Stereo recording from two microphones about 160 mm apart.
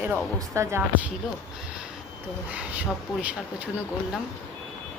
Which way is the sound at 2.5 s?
10° right (ahead or behind).